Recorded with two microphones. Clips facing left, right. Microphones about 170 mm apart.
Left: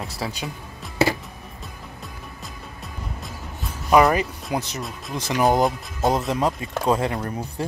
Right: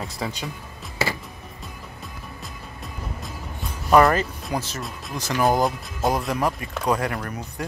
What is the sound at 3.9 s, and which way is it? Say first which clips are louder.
Speech: even; 10° left (ahead or behind).